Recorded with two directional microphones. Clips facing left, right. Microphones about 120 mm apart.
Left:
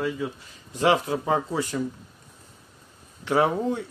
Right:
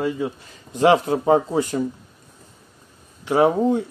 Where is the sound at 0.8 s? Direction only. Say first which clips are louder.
Right 6 dB; 40° right (ahead or behind).